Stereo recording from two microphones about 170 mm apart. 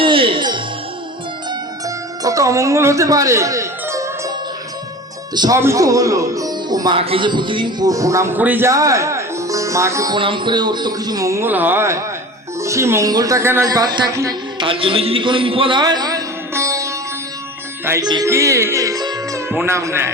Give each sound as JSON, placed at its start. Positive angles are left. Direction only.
{"t": 0.0, "sound": "music", "side_deg": -30}
{"t": 2.2, "sound": "speech", "side_deg": -20}
{"t": 5.3, "sound": "speech", "side_deg": -25}
{"t": 10.2, "sound": "a man's voice", "side_deg": -30}
{"t": 17.8, "sound": "music", "side_deg": -15}
{"t": 18.1, "sound": "speech", "side_deg": -20}